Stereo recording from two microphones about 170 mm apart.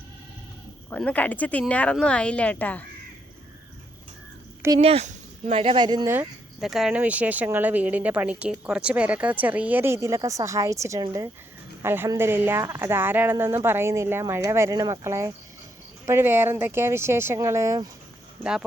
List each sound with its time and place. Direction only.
0.9 s speech: 10° left (ahead or behind)
4.8 s speech: 35° right (ahead or behind)
6.1 s speech: centre (ahead or behind); by 17.8 s 15° right (ahead or behind)